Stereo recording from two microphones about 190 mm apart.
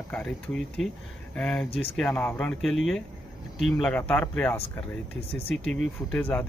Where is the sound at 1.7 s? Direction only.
30° left (ahead or behind).